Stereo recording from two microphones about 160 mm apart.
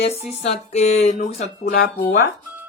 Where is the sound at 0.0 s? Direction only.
45° left (ahead or behind).